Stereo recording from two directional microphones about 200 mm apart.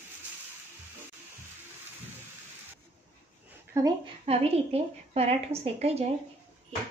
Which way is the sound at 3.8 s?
15° right (ahead or behind).